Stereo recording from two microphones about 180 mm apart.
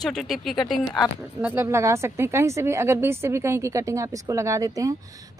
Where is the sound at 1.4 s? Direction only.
10° right (ahead or behind).